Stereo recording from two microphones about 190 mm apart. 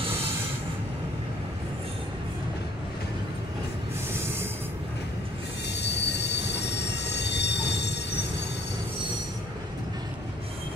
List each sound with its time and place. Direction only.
5.7 s train wheels squealing: 65° left (ahead or behind)